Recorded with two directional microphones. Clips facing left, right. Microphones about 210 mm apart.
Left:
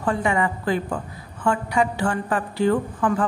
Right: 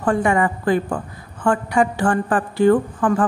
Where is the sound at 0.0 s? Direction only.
50° right (ahead or behind).